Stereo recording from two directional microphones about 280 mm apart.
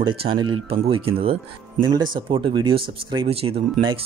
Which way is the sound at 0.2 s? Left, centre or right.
Centre.